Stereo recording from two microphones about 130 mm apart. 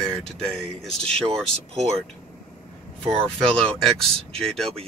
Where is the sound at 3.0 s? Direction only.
45° right (ahead or behind).